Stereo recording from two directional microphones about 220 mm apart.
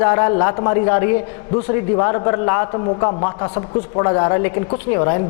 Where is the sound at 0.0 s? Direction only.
20° left (ahead or behind).